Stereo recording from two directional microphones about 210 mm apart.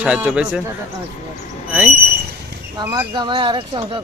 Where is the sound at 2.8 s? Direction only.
20° right (ahead or behind).